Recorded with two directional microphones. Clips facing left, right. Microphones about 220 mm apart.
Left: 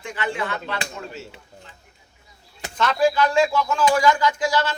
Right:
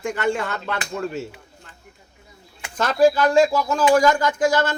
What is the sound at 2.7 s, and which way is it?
Speech, 45° right (ahead or behind).